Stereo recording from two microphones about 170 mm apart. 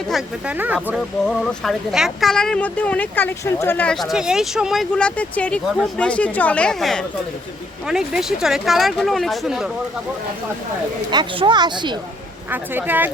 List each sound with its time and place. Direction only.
0.1 s speech: 10° right (ahead or behind)
11.1 s speech: 25° right (ahead or behind)
12.5 s speech: 10° right (ahead or behind)